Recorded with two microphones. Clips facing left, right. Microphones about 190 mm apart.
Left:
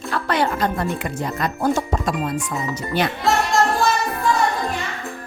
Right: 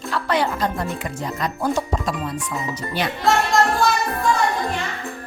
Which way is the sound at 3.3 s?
Centre (ahead or behind).